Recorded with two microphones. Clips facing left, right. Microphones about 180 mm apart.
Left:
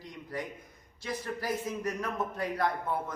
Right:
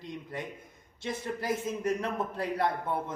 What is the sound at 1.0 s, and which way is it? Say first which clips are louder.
A man's voice: right 1 dB; 25° right (ahead or behind).